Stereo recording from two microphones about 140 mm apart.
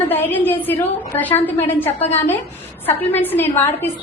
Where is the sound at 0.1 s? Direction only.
15° left (ahead or behind).